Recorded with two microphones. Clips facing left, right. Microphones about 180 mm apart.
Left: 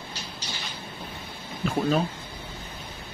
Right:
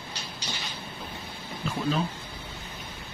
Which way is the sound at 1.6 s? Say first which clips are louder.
Left 4 dB; 45° left (ahead or behind).